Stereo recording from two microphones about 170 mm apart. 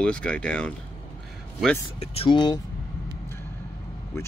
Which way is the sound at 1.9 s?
35° left (ahead or behind).